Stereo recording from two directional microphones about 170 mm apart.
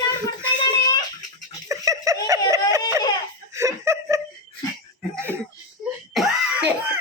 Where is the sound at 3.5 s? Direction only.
15° right (ahead or behind).